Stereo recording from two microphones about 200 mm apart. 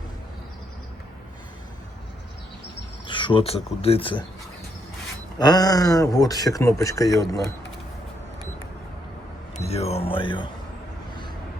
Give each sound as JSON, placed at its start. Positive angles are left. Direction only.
{"t": 3.1, "sound": "speech", "side_deg": 25}
{"t": 5.4, "sound": "speech", "side_deg": 20}
{"t": 9.6, "sound": "speech", "side_deg": 30}